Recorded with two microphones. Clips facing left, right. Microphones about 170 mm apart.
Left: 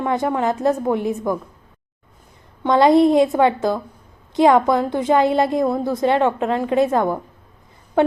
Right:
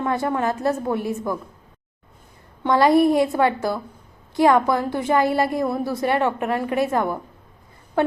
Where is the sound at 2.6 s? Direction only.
20° left (ahead or behind).